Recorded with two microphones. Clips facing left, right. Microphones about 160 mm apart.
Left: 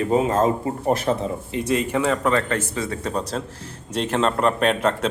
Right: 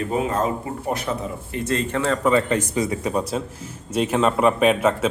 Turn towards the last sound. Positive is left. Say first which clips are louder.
# right 2 dB
turn(degrees=-5)  # may be behind; listen again after turning